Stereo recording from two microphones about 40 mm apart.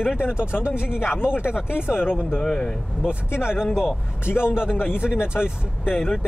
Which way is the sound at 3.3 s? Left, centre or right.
Left.